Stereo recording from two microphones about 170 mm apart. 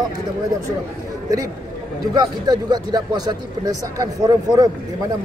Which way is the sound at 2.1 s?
25° right (ahead or behind).